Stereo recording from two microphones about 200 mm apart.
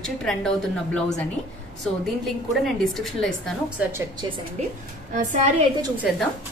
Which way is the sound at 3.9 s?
20° right (ahead or behind).